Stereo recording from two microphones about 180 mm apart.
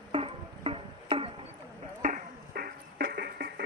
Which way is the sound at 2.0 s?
50° right (ahead or behind).